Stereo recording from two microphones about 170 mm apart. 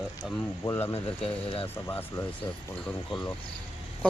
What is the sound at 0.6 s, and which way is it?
Speech, 20° left (ahead or behind).